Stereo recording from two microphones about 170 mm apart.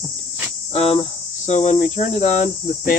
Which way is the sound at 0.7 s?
35° left (ahead or behind).